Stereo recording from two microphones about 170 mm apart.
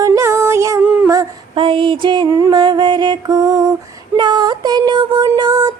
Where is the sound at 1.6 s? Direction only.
30° right (ahead or behind).